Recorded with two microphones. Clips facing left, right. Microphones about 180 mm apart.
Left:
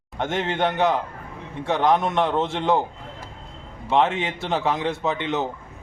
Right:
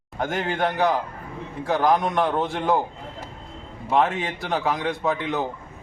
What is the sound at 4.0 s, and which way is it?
Speech, 25° left (ahead or behind).